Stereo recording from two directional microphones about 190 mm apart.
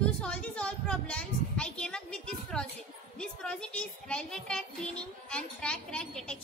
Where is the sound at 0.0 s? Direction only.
5° left (ahead or behind).